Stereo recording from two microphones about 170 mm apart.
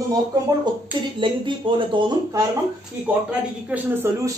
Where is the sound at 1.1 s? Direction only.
30° right (ahead or behind).